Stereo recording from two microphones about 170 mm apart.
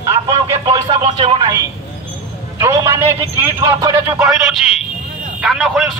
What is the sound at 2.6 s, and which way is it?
A man's voice, 15° right (ahead or behind).